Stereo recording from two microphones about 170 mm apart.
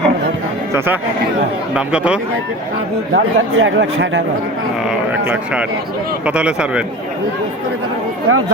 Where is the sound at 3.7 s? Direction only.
90° right.